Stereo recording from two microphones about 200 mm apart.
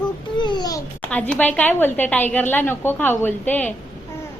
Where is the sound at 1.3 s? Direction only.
5° left (ahead or behind).